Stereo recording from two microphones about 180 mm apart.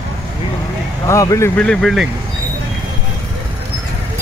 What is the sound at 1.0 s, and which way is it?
Speech, 15° left (ahead or behind).